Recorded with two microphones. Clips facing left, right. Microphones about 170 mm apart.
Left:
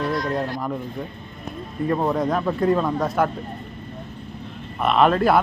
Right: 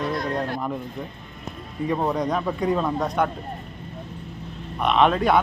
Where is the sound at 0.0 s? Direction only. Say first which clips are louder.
Left 2 dB; 25° right (ahead or behind).